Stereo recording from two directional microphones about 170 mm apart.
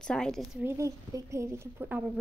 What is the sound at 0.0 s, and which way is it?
Speech, 5° left (ahead or behind).